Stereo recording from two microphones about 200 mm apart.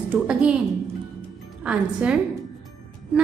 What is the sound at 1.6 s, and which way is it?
Speech, 5° right (ahead or behind).